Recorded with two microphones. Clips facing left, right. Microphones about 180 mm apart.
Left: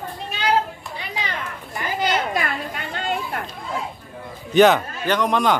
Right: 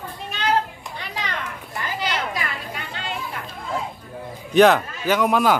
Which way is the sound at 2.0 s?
50° left (ahead or behind).